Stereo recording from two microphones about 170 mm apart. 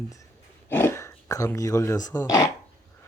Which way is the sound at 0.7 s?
15° left (ahead or behind).